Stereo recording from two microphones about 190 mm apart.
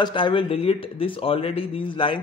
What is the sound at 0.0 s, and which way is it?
Speech, 25° left (ahead or behind).